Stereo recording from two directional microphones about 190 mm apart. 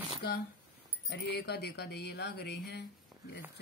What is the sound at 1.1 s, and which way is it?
Speech, 60° left (ahead or behind).